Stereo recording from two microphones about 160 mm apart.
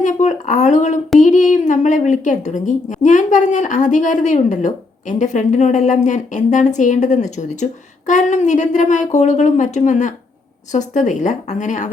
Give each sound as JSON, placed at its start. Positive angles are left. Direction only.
{"t": 0.0, "sound": "a woman's voice", "side_deg": 50}